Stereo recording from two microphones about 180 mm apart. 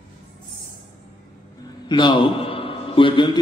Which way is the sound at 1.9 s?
25° left (ahead or behind).